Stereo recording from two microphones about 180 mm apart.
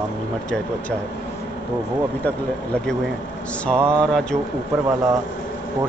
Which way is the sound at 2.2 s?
10° left (ahead or behind).